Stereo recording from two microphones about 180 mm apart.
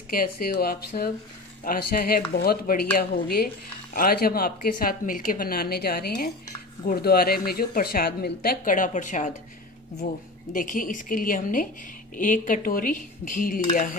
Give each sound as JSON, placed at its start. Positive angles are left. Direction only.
{"t": 0.1, "sound": "a woman's voice", "side_deg": 50}
{"t": 10.5, "sound": "a woman's voice", "side_deg": 45}